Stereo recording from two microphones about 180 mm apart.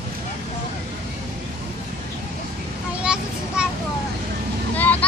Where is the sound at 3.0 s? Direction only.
5° right (ahead or behind).